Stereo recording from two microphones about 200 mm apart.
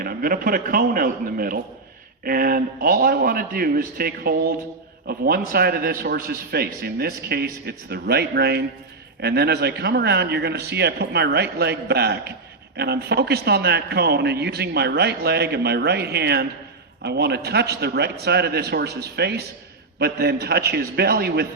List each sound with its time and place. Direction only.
0.0 s a man's voice: 45° right (ahead or behind)